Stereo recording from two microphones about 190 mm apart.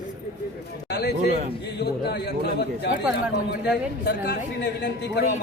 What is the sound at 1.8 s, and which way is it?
Speech, 60° left (ahead or behind).